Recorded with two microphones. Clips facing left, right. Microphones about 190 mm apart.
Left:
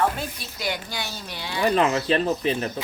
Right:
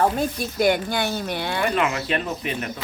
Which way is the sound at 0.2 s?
50° right (ahead or behind).